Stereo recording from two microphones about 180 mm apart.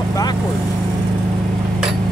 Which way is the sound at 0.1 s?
20° left (ahead or behind).